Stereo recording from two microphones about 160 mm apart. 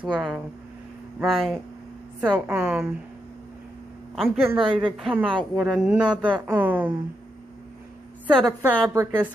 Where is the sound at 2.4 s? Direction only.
10° right (ahead or behind).